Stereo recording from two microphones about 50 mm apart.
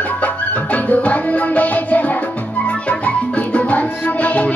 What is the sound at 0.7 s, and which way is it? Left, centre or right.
Music, left.